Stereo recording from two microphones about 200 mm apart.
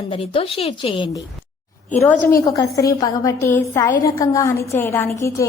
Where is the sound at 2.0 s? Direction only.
10° left (ahead or behind).